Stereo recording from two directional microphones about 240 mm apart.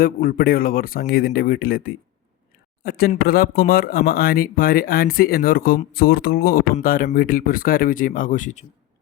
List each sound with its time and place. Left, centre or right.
0.0 s speech: left